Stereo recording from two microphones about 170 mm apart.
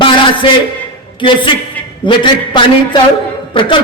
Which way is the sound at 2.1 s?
30° left (ahead or behind).